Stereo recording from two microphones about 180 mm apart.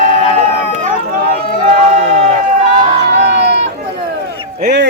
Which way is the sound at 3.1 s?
75° right (ahead or behind).